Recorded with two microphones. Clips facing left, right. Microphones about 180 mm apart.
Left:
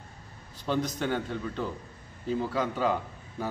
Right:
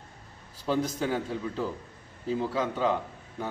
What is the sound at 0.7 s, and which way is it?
Speech, 5° right (ahead or behind).